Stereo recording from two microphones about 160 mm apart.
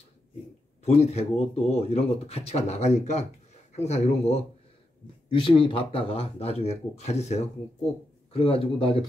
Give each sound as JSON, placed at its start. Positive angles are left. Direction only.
{"t": 0.8, "sound": "speech", "side_deg": 40}